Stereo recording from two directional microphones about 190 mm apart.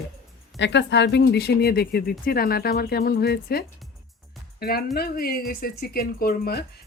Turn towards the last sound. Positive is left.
turn(degrees=55)  # may be behind; listen again after turning